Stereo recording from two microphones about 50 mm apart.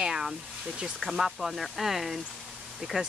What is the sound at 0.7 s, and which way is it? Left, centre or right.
Speech, centre.